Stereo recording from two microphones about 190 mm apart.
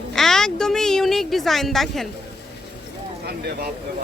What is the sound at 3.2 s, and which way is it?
Speech, 55° right (ahead or behind).